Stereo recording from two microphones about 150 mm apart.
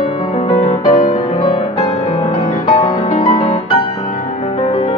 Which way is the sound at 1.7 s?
45° left (ahead or behind).